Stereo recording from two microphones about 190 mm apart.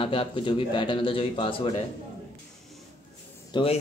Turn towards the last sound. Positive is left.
turn(degrees=25)  # may be behind; listen again after turning